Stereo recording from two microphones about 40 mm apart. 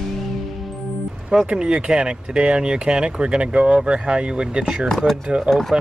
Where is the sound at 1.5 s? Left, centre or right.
Right.